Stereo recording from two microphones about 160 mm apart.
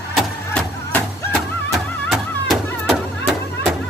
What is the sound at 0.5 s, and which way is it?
Music, 5° left (ahead or behind).